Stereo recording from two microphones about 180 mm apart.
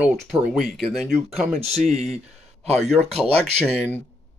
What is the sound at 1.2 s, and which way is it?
Speech, 35° right (ahead or behind).